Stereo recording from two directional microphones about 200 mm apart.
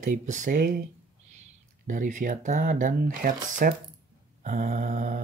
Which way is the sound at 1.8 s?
40° right (ahead or behind).